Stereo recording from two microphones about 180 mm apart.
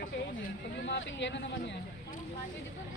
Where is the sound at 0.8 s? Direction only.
80° left.